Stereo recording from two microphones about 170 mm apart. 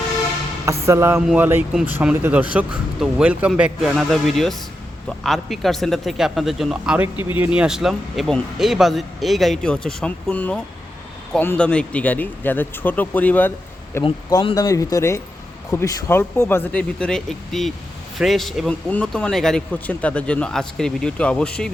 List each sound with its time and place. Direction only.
0.6 s speech: 15° right (ahead or behind); by 13.5 s 10° left (ahead or behind)
14.0 s speech: 25° left (ahead or behind); by 21.7 s 5° left (ahead or behind)